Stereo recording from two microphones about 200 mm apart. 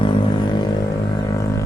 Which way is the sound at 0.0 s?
20° left (ahead or behind).